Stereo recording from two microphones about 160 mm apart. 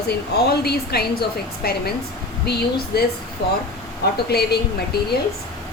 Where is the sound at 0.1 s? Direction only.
85° left.